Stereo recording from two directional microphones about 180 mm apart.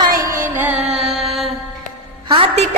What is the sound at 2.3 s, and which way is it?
Speech, 30° right (ahead or behind).